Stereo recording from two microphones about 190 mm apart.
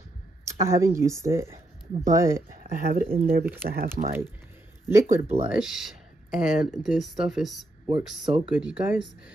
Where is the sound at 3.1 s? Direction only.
50° right (ahead or behind).